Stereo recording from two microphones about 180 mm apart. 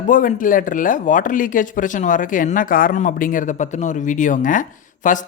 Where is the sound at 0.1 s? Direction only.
50° left (ahead or behind).